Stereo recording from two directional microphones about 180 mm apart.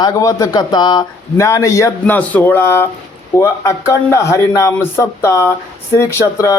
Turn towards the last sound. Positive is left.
turn(degrees=15)  # may be behind; listen again after turning